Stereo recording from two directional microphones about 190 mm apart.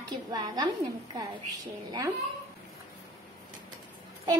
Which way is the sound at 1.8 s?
20° right (ahead or behind).